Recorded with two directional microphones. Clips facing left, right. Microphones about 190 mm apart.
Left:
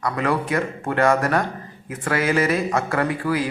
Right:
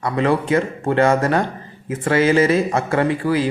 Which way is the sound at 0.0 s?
25° right (ahead or behind).